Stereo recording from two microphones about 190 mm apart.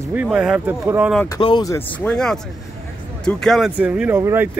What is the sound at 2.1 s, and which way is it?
A man's voice, 5° left (ahead or behind).